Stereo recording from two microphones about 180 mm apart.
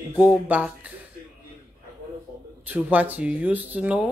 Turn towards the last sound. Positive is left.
turn(degrees=-5)  # may be behind; listen again after turning